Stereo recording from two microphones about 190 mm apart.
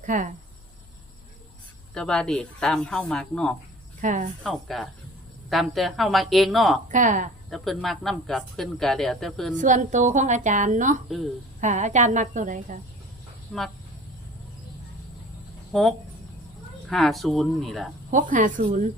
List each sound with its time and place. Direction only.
0.0 s speech: 40° right (ahead or behind)
1.9 s speech: 5° left (ahead or behind)
4.0 s a woman's voice: 40° right (ahead or behind)
4.4 s speech: centre (ahead or behind)
6.8 s a woman's voice: 40° right (ahead or behind)
7.5 s speech: centre (ahead or behind)
9.6 s a woman's voice: 40° right (ahead or behind)
13.5 s speech: 5° left (ahead or behind)
15.7 s speech: centre (ahead or behind)
18.1 s a woman's voice: 45° right (ahead or behind)